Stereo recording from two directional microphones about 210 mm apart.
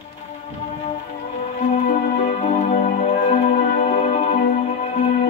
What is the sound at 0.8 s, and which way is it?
Music, 30° left (ahead or behind).